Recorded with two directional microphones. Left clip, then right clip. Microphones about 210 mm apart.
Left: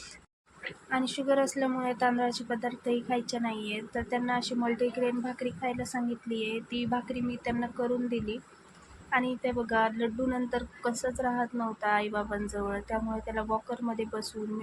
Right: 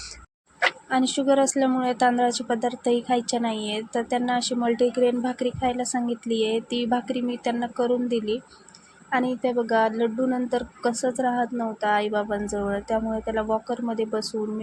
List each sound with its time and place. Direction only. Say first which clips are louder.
0.9 s a woman's voice: right 3 dB; 20° right (ahead or behind)